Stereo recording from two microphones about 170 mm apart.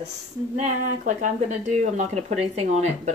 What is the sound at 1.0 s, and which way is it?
Speech, 45° right (ahead or behind).